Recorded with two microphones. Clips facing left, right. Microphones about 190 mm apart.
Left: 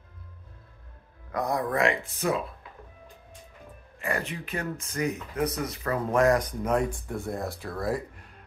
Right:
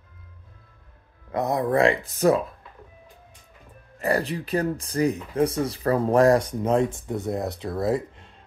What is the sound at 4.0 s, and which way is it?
Speech, 35° right (ahead or behind).